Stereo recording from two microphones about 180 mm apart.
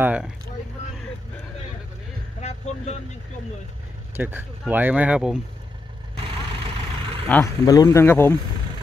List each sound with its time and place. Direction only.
0.0 s a sound: 10° right (ahead or behind)
2.4 s vehicle: 35° left (ahead or behind)
4.2 s speech: 10° right (ahead or behind)
6.1 s vehicle: 30° right (ahead or behind)
7.2 s speech: 10° left (ahead or behind)
7.6 s speech: 20° left (ahead or behind)